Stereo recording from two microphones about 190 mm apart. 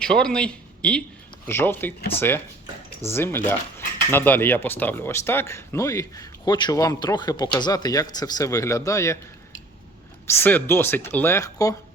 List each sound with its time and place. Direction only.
0.0 s speech: 5° left (ahead or behind)
10.2 s speech: 10° left (ahead or behind)